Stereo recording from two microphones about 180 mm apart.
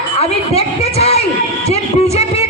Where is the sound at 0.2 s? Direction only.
35° left (ahead or behind).